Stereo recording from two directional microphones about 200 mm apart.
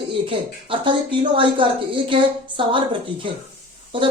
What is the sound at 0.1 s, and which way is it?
Speech, 25° right (ahead or behind).